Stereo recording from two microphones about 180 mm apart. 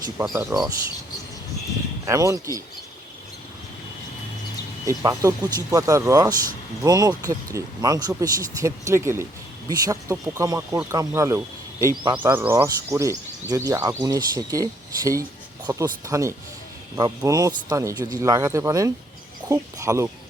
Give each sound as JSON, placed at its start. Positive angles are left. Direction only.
{"t": 0.2, "sound": "speech", "side_deg": -15}
{"t": 2.0, "sound": "speech", "side_deg": -20}
{"t": 4.9, "sound": "speech", "side_deg": -20}